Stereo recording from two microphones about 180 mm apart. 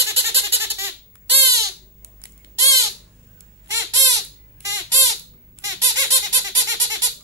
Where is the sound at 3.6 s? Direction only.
15° right (ahead or behind).